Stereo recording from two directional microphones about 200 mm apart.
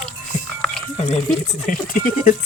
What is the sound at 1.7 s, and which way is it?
Speech, 45° left (ahead or behind).